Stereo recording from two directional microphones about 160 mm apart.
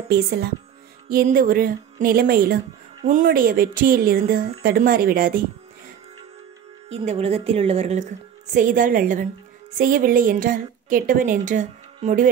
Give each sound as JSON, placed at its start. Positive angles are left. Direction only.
{"t": 0.1, "sound": "speech", "side_deg": -85}
{"t": 1.0, "sound": "a woman's voice", "side_deg": -60}
{"t": 3.0, "sound": "a woman's voice", "side_deg": -50}
{"t": 6.9, "sound": "a woman's voice", "side_deg": -40}
{"t": 8.5, "sound": "a woman's voice", "side_deg": -55}